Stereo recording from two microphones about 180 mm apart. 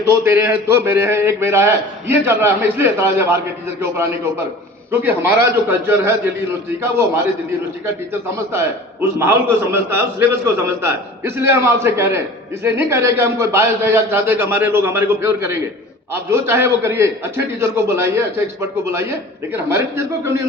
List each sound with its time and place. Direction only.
0.3 s a man's voice: 15° right (ahead or behind)
8.5 s a man's voice: 15° right (ahead or behind)